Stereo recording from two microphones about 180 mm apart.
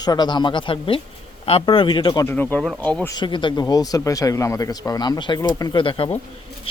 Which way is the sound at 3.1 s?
25° left (ahead or behind).